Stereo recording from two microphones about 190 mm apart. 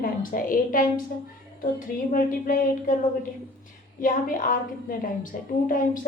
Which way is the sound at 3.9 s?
45° left (ahead or behind).